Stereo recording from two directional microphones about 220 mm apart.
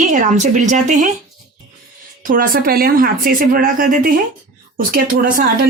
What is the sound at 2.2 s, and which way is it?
A woman's voice, 40° right (ahead or behind).